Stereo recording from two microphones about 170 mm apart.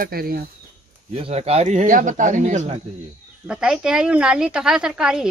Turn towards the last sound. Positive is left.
turn(degrees=-5)  # may be behind; listen again after turning